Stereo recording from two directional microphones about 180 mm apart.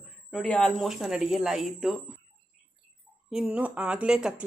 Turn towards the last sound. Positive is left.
turn(degrees=-5)  # may be behind; listen again after turning